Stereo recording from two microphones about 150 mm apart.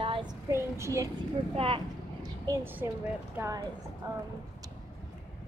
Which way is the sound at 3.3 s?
20° right (ahead or behind).